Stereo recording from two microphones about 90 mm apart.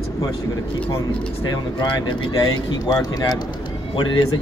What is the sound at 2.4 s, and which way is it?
Speech, 50° left (ahead or behind).